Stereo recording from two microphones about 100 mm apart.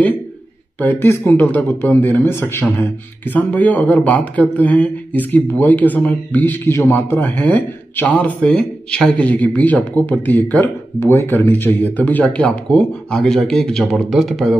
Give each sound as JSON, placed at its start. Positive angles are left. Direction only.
{"t": 0.7, "sound": "speech", "side_deg": 20}